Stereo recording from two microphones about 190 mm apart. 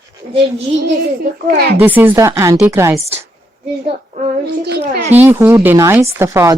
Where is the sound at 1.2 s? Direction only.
55° right (ahead or behind).